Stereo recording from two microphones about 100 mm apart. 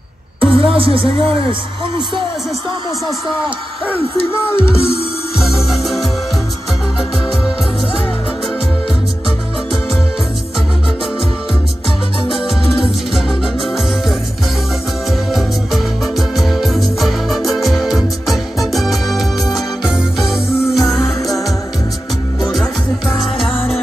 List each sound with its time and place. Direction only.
0.4 s speech: 65° right (ahead or behind)
4.3 s music: 25° left (ahead or behind)
5.7 s music: centre (ahead or behind)
13.6 s music: centre (ahead or behind)
22.4 s music: centre (ahead or behind)